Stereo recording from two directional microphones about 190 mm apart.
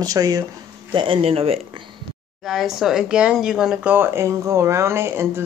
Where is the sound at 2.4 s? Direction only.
Centre (ahead or behind).